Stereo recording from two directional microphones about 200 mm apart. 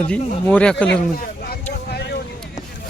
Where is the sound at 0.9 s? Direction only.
50° left (ahead or behind).